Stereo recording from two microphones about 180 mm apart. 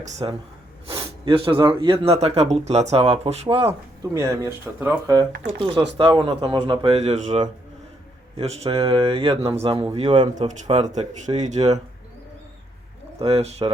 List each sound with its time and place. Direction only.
0.0 s speech: 40° right (ahead or behind)
0.9 s speech: 30° right (ahead or behind)
4.1 s speech: 15° right (ahead or behind)
6.0 s speech: 25° right (ahead or behind)
13.1 s speech: 35° right (ahead or behind)